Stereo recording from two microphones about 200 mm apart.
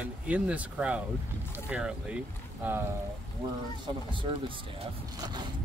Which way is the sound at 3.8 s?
25° right (ahead or behind).